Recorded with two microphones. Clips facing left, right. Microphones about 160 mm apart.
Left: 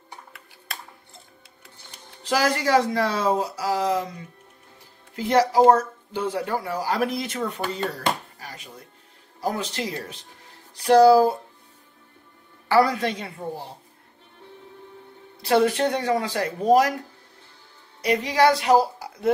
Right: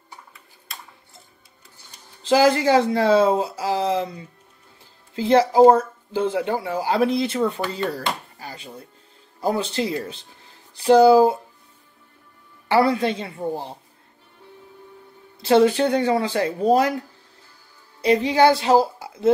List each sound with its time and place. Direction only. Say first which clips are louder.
2.2 s speech: right 6 dB; 25° right (ahead or behind)
8.4 s a sound: right 4 dB; 30° right (ahead or behind)
9.4 s speech: right 5 dB; 30° right (ahead or behind)
12.6 s speech: right 1 dB; 25° right (ahead or behind)
15.4 s speech: right 4 dB; 30° right (ahead or behind)
18.0 s speech: right 3 dB; 30° right (ahead or behind)